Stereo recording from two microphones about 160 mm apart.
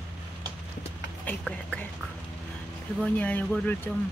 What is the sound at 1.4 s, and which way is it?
Whispering, 5° left (ahead or behind).